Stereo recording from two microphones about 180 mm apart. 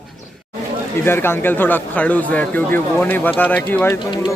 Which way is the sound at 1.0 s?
15° left (ahead or behind).